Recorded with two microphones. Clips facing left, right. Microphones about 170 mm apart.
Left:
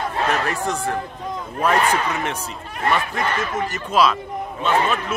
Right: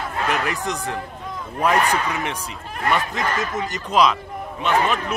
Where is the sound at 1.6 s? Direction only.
15° right (ahead or behind).